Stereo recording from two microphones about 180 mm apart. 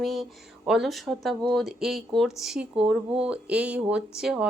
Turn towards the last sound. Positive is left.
turn(degrees=-5)  # may be behind; listen again after turning